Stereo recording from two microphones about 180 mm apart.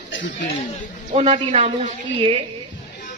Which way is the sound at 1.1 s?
35° right (ahead or behind).